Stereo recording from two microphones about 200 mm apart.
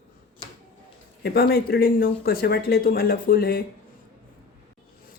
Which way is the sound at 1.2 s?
50° left (ahead or behind).